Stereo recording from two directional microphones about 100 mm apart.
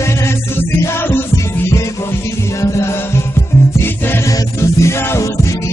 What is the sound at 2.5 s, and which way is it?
Music, 30° left (ahead or behind).